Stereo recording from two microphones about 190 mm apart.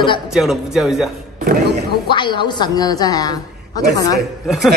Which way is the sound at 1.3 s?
55° right (ahead or behind).